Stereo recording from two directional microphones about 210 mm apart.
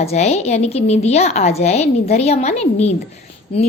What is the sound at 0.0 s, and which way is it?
A woman's voice, 30° left (ahead or behind).